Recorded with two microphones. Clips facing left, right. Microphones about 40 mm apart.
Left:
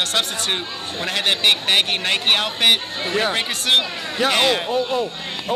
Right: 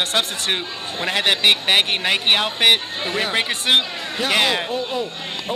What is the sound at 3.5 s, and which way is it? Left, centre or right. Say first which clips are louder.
Speech: right 1 dB; right.